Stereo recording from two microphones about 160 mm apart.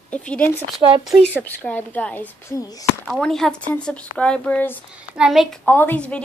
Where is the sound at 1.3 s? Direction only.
10° left (ahead or behind).